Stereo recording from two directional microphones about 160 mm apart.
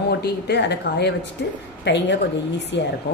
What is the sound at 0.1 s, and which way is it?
Speech, 90° left.